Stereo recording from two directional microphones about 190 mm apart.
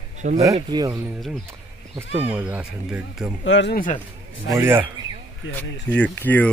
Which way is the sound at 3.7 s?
45° left (ahead or behind).